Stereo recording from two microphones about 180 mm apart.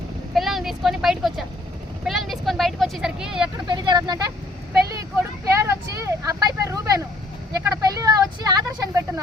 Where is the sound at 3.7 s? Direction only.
25° right (ahead or behind).